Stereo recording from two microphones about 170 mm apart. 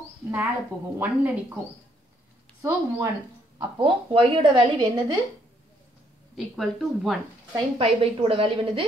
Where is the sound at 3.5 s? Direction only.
30° right (ahead or behind).